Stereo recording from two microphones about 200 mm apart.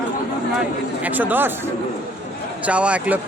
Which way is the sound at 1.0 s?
10° right (ahead or behind).